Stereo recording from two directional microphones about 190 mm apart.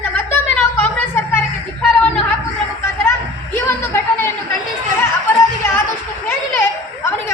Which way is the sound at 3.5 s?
15° left (ahead or behind).